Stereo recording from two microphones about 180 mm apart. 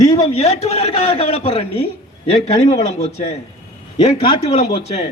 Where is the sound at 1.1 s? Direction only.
30° left (ahead or behind).